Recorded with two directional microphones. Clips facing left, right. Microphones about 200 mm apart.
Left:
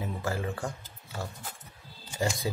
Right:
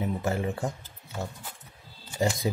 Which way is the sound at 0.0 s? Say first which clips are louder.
Right 4 dB; 20° right (ahead or behind).